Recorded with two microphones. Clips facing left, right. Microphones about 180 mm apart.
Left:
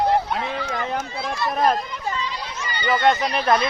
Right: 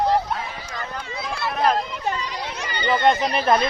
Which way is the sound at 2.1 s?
45° right (ahead or behind).